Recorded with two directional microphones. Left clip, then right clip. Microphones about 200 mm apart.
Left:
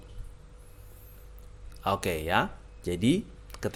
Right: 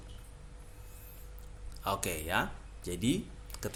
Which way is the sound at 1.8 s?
35° left (ahead or behind).